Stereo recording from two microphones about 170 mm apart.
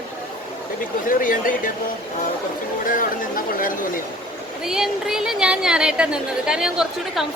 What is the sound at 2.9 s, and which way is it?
Speech, 55° left (ahead or behind).